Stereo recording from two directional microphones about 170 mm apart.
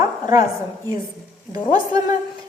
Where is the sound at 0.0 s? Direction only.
20° right (ahead or behind).